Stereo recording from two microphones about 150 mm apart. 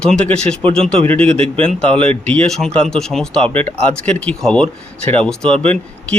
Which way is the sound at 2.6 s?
40° right (ahead or behind).